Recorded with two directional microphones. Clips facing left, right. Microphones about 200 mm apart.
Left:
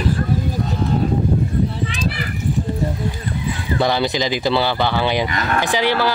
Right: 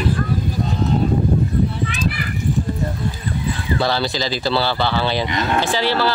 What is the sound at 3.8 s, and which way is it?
Speech, 15° left (ahead or behind).